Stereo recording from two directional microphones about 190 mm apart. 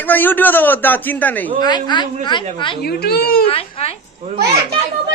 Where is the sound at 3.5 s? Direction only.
30° left (ahead or behind).